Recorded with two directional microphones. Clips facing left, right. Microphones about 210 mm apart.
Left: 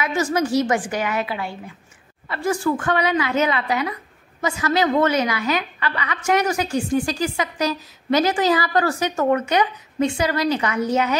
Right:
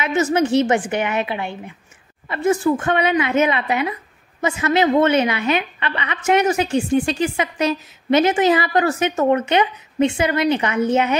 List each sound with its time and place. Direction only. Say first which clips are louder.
0.0 s a woman's voice: right 3 dB; 25° right (ahead or behind)